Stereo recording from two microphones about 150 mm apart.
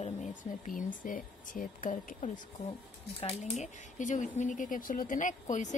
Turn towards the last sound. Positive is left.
turn(degrees=55)  # may be behind; listen again after turning